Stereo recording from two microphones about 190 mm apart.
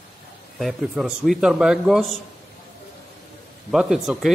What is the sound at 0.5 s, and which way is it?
Speech, centre (ahead or behind).